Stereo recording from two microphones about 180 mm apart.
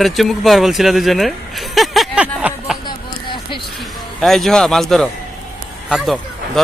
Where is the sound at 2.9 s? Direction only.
25° left (ahead or behind).